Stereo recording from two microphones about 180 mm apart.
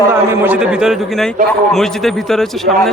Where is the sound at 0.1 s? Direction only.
10° right (ahead or behind).